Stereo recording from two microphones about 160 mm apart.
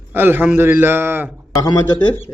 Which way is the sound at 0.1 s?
10° right (ahead or behind).